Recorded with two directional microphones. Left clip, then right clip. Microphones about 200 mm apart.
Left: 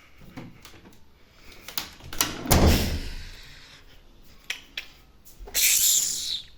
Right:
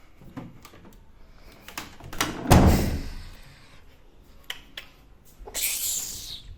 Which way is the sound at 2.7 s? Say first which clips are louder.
Even; 10° right (ahead or behind).